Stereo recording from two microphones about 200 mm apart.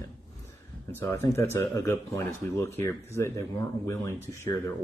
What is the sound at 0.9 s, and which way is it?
Speech, 15° left (ahead or behind).